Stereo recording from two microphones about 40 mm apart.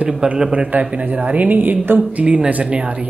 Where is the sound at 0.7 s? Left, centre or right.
Right.